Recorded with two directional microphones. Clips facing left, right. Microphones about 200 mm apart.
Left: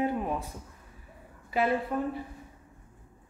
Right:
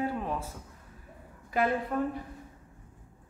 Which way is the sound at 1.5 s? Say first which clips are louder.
Left 1 dB; 5° left (ahead or behind).